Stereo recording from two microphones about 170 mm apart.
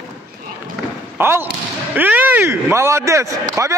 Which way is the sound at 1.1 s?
15° right (ahead or behind).